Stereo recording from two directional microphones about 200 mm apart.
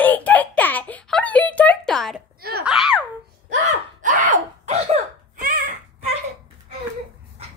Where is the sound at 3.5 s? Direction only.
40° right (ahead or behind).